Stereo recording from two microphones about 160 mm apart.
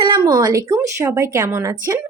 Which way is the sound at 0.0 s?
25° right (ahead or behind).